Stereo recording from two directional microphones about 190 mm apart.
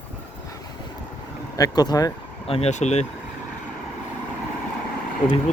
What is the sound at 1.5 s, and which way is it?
Speech, 20° left (ahead or behind).